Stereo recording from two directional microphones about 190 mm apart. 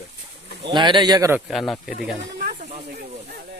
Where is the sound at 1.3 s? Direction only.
Centre (ahead or behind).